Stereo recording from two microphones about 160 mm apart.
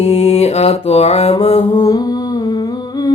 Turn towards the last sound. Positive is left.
turn(degrees=20)  # may be behind; listen again after turning